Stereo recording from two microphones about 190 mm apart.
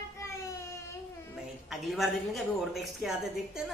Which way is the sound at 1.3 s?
Centre (ahead or behind).